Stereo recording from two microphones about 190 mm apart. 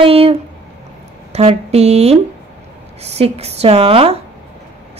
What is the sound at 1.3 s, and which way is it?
A woman's voice, 35° right (ahead or behind).